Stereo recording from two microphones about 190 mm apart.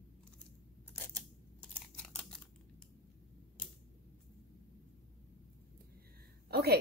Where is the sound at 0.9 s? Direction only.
10° left (ahead or behind).